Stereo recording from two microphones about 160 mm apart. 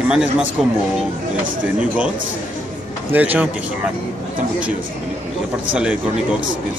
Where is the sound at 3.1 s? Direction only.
10° right (ahead or behind).